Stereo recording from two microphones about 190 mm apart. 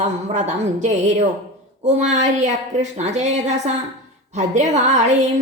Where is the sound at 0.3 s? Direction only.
40° right (ahead or behind).